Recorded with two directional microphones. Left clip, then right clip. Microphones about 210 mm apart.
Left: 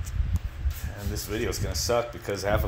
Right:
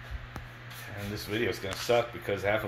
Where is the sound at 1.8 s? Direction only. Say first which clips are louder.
Left 1 dB; 20° left (ahead or behind).